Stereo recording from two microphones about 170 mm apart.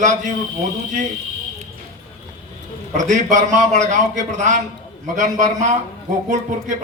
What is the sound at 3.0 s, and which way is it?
A man's voice, 45° right (ahead or behind).